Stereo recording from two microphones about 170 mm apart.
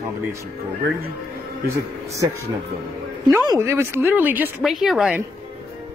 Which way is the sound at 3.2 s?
20° right (ahead or behind).